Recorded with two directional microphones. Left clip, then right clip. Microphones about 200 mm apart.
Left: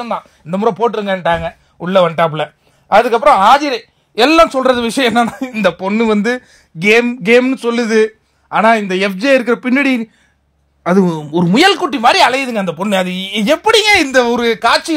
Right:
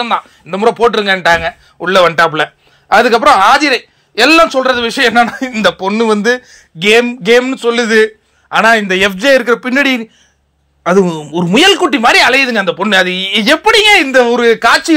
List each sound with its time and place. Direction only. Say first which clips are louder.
0.0 s speech: right 6 dB; 45° left (ahead or behind)